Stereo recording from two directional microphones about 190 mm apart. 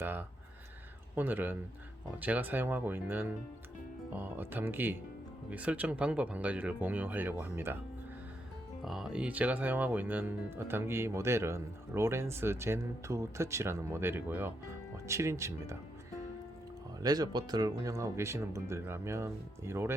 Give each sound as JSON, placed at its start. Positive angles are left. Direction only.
{"t": 0.0, "sound": "speech", "side_deg": -10}
{"t": 8.8, "sound": "speech", "side_deg": 0}
{"t": 17.0, "sound": "speech", "side_deg": -20}